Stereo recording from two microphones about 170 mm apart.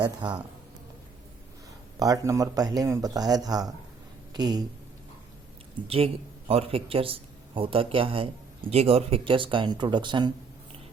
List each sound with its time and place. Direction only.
0.0 s speech: 25° right (ahead or behind)
2.0 s speech: 20° right (ahead or behind)
6.5 s speech: 35° right (ahead or behind)